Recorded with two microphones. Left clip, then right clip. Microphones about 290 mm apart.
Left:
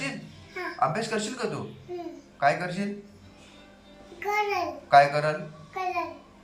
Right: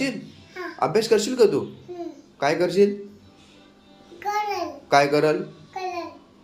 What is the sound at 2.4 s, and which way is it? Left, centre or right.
Speech, right.